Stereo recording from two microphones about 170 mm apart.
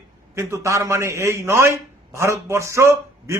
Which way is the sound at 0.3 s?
15° right (ahead or behind).